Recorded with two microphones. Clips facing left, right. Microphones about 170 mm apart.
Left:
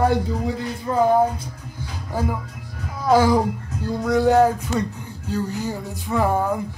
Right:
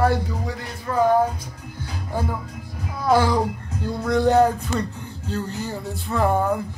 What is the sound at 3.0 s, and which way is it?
Speech, 15° left (ahead or behind).